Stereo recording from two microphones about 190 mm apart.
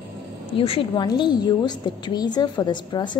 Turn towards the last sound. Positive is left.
turn(degrees=25)  # may be behind; listen again after turning